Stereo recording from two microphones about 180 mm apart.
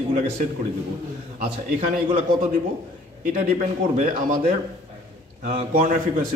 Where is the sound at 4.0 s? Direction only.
45° right (ahead or behind).